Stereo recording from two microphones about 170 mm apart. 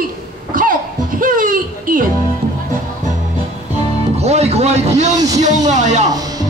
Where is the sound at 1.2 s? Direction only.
55° right (ahead or behind).